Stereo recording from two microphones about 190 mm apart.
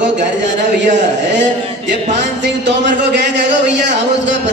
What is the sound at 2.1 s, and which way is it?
A man's voice, 65° right (ahead or behind).